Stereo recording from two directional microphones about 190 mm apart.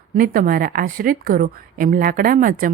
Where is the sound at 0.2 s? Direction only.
50° right (ahead or behind).